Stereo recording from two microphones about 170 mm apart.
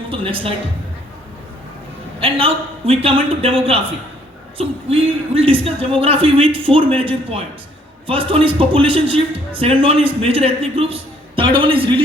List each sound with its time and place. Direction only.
0.1 s a man's voice: 30° right (ahead or behind)
2.2 s a man's voice: 35° right (ahead or behind)